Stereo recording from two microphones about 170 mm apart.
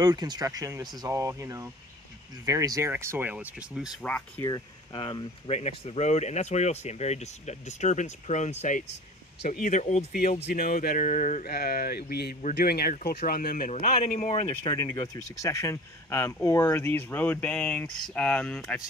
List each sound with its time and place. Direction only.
0.0 s speech: 25° right (ahead or behind); by 4.0 s 5° right (ahead or behind)
4.0 s speech: 5° left (ahead or behind)
4.9 s speech: 35° left (ahead or behind)
10.4 s speech: 60° left (ahead or behind)
14.7 s speech: 25° left (ahead or behind); by 18.8 s 5° left (ahead or behind)